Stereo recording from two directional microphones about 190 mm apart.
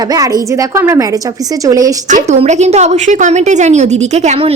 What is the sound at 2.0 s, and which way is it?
A woman's voice, 40° right (ahead or behind).